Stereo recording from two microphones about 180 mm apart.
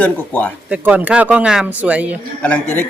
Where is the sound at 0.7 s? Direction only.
10° right (ahead or behind).